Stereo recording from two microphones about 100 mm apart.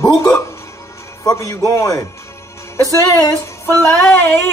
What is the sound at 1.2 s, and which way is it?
Speech, 30° left (ahead or behind).